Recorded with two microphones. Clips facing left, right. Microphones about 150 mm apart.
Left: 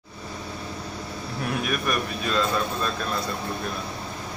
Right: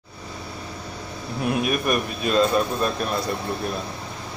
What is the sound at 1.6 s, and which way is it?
Speech, 20° right (ahead or behind).